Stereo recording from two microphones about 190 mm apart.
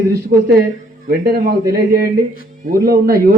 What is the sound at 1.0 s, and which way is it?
A man's voice, 55° right (ahead or behind).